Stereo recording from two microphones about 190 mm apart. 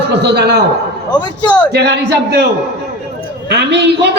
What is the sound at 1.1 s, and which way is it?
Speech, 25° left (ahead or behind).